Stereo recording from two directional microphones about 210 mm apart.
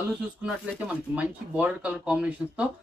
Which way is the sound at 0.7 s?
5° right (ahead or behind).